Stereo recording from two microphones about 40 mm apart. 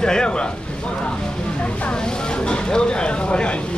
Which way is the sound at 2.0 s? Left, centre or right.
Centre.